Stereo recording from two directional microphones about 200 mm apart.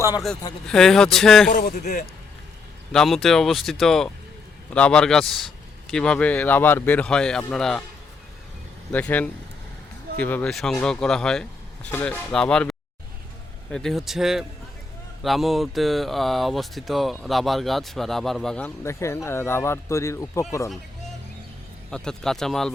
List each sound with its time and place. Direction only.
0.7 s speech: 5° left (ahead or behind)
1.5 s speech: 40° left (ahead or behind)
2.9 s speech: centre (ahead or behind)
8.9 s speech: 5° left (ahead or behind)
21.8 s speech: 5° left (ahead or behind)